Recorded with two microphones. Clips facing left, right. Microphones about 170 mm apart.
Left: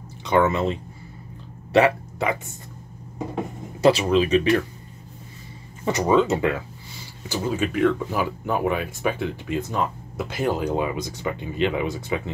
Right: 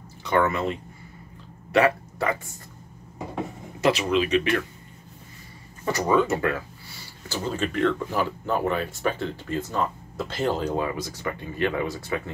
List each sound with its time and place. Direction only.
0.2 s speech: 20° left (ahead or behind)
3.8 s speech: 30° left (ahead or behind)
5.9 s speech: 20° left (ahead or behind)